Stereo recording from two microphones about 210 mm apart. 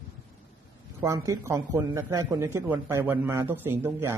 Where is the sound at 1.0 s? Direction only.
15° right (ahead or behind).